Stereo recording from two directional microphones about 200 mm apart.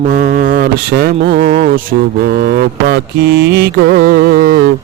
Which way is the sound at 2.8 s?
50° right (ahead or behind).